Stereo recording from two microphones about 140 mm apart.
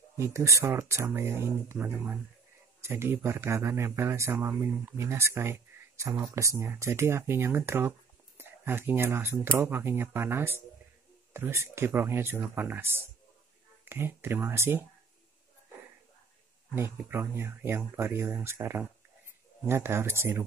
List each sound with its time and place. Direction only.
0.2 s a man's voice: 20° right (ahead or behind)
16.7 s speech: 15° right (ahead or behind)